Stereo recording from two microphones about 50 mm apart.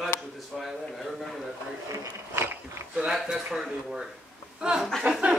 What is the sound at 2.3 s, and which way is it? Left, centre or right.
Speech, right.